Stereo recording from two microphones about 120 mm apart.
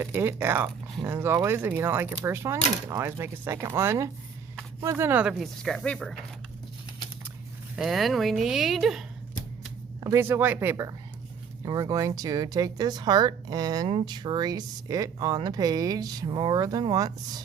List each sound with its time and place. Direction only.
0.0 s speech: 20° right (ahead or behind)
5.6 s speech: 5° left (ahead or behind)
7.8 s speech: centre (ahead or behind)
10.0 s speech: 25° right (ahead or behind)
11.6 s speech: 35° right (ahead or behind)